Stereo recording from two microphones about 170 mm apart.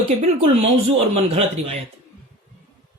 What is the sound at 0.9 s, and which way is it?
Speech, 35° right (ahead or behind).